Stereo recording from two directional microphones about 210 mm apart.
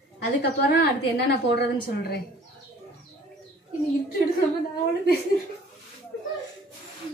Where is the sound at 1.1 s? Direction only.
50° left (ahead or behind).